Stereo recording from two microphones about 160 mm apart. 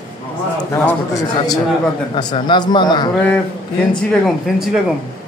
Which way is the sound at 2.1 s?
30° left (ahead or behind).